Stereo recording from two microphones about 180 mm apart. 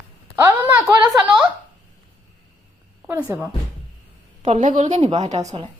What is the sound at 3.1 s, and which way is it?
Speech, 10° right (ahead or behind).